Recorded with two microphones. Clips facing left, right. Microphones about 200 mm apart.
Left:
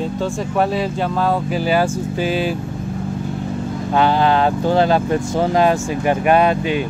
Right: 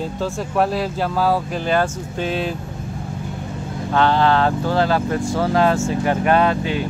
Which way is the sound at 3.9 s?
15° left (ahead or behind).